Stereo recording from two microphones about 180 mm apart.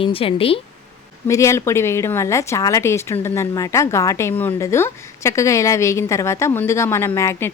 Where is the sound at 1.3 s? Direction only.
15° left (ahead or behind).